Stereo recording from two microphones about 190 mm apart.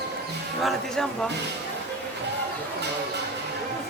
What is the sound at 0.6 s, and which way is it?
Music, 5° left (ahead or behind).